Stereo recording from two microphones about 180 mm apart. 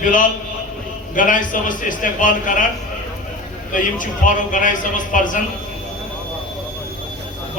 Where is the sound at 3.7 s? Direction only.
45° left (ahead or behind).